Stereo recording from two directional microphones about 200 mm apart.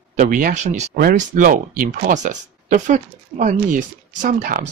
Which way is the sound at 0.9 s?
50° right (ahead or behind).